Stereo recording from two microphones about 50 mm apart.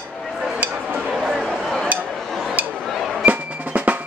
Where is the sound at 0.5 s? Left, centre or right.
Right.